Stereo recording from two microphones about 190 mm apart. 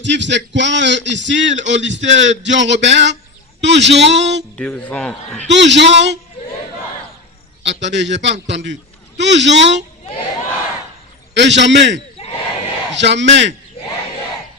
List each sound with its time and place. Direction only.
0.0 s speech: 70° right (ahead or behind)
4.5 s speech: 5° left (ahead or behind)
5.5 s speech: 70° right (ahead or behind)
7.6 s speech: 70° right (ahead or behind)
11.3 s speech: 65° right (ahead or behind)
12.2 s battle cry: 30° left (ahead or behind)
12.9 s speech: 70° right (ahead or behind)